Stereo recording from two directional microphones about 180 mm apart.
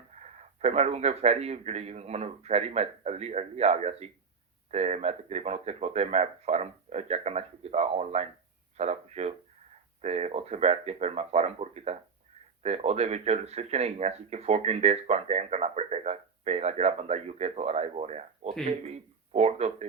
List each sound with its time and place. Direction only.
0.2 s speech: 35° right (ahead or behind)